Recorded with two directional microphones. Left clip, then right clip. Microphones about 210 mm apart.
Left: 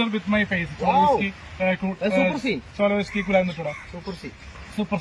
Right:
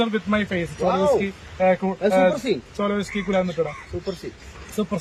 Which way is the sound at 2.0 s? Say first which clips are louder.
Right 4 dB; 15° right (ahead or behind).